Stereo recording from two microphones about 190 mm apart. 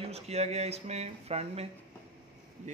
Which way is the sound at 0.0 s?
35° right (ahead or behind).